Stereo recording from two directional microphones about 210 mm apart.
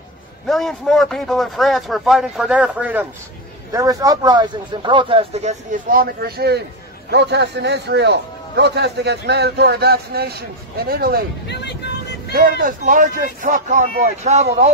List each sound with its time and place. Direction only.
0.5 s a man's voice: centre (ahead or behind)
3.7 s a man's voice: 15° right (ahead or behind); by 11.2 s 45° right (ahead or behind)
11.4 s vehicle: 55° left (ahead or behind)
12.3 s speech: 45° right (ahead or behind)